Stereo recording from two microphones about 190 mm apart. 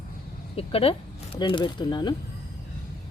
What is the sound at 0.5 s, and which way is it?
Speech, 30° left (ahead or behind).